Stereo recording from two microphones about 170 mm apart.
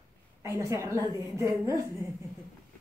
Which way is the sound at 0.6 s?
20° right (ahead or behind).